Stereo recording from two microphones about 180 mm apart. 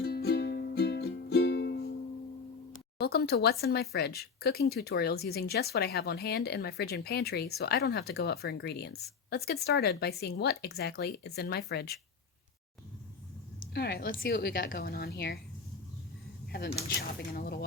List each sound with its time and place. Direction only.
0.0 s music: 60° left (ahead or behind)
3.0 s speech: 60° left (ahead or behind)
13.7 s speech: 60° left (ahead or behind)
16.9 s speech: 60° left (ahead or behind)